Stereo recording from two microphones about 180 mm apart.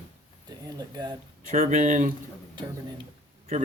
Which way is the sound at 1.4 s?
45° right (ahead or behind).